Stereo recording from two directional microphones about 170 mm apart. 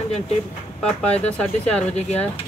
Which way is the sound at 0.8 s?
5° left (ahead or behind).